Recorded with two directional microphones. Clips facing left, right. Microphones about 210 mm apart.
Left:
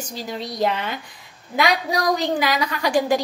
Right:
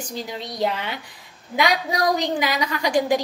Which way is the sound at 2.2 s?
15° right (ahead or behind).